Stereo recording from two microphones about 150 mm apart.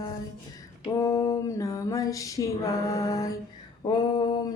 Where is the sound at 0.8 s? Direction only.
20° left (ahead or behind).